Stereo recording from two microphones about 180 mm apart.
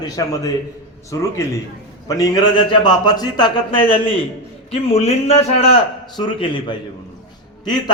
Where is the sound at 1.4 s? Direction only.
15° left (ahead or behind).